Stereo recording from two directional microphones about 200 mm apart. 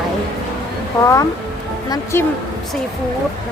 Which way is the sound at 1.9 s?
15° left (ahead or behind).